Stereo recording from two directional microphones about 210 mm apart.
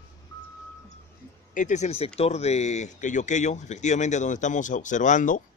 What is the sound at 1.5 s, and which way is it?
Speech, 35° left (ahead or behind).